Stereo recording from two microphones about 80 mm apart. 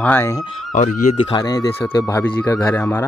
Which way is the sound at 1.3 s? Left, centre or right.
Left.